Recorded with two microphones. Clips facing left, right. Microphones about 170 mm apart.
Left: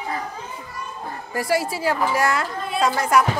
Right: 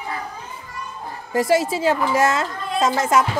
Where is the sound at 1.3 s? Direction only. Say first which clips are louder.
Right 5 dB; 20° right (ahead or behind).